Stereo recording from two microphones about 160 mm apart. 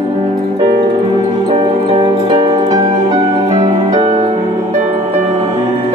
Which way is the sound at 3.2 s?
35° right (ahead or behind).